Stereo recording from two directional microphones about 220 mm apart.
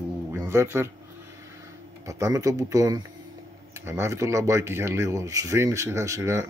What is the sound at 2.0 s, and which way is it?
Speech, 15° right (ahead or behind).